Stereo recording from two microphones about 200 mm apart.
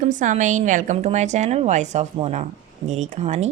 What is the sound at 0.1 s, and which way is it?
A woman's voice, 40° right (ahead or behind).